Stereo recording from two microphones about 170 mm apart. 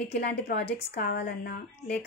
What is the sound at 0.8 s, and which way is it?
Speech, 70° left (ahead or behind).